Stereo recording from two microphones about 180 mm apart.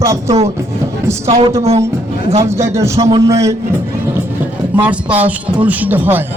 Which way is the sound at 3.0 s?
35° right (ahead or behind).